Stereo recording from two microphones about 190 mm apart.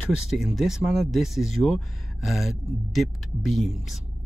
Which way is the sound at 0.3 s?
Centre (ahead or behind).